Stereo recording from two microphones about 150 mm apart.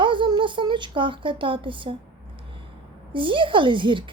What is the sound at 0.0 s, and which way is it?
Speech, 35° right (ahead or behind).